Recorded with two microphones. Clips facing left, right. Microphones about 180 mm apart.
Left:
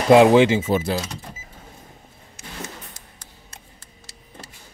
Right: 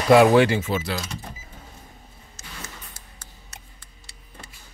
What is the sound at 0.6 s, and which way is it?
Speech, 45° left (ahead or behind).